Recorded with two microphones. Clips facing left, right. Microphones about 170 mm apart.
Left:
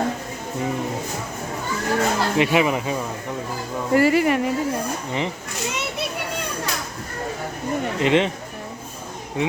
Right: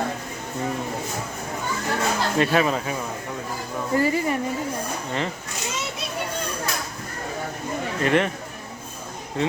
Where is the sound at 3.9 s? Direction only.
80° left.